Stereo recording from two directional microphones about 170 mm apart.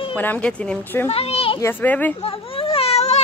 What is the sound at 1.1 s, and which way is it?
Speech, 35° left (ahead or behind).